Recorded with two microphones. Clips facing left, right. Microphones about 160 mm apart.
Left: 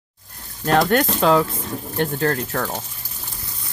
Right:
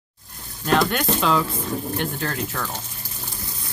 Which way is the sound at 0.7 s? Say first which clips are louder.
Left 4 dB; 40° left (ahead or behind).